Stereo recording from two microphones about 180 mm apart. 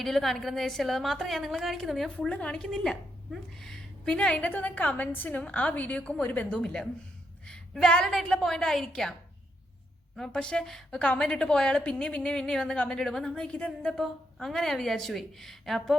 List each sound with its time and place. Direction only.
0.0 s a woman's voice: centre (ahead or behind)
10.2 s a woman's voice: 5° left (ahead or behind)